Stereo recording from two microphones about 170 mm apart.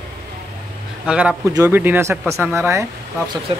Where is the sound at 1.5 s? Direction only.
15° right (ahead or behind).